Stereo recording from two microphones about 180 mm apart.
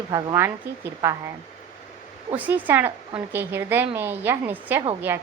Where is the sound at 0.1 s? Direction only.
15° right (ahead or behind).